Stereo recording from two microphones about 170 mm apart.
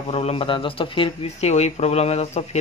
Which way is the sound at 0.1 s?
35° left (ahead or behind).